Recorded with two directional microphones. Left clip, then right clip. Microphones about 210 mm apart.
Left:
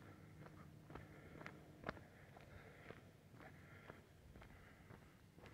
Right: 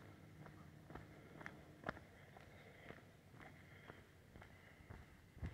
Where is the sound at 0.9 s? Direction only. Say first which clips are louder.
Even; 55° right (ahead or behind).